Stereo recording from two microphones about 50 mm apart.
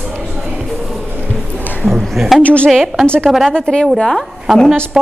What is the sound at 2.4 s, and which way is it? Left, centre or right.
Speech, left.